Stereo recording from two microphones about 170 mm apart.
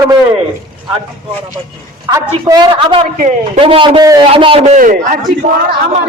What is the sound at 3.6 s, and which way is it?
A man's voice, 30° right (ahead or behind).